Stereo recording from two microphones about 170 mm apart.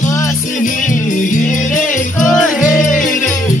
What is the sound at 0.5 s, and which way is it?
Music, 50° left (ahead or behind).